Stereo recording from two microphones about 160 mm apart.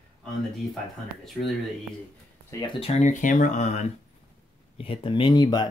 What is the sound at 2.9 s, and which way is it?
Speech, 50° left (ahead or behind).